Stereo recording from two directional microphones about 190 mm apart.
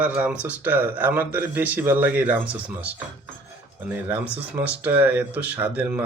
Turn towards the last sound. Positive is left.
turn(degrees=-10)  # may be behind; listen again after turning